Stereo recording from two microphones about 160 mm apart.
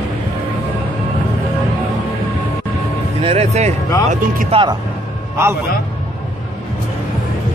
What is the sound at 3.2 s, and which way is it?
Speech, 40° right (ahead or behind).